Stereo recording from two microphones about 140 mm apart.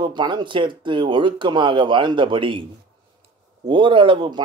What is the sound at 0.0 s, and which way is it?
Speech, 35° right (ahead or behind).